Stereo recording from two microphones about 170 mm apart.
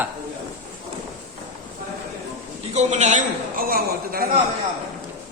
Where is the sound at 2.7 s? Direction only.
45° right (ahead or behind); by 4.3 s 60° right (ahead or behind).